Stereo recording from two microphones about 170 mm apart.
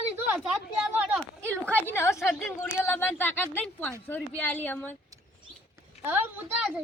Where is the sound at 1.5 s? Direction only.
10° left (ahead or behind).